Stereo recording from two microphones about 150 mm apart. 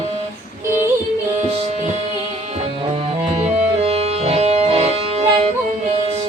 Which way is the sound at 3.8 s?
45° right (ahead or behind).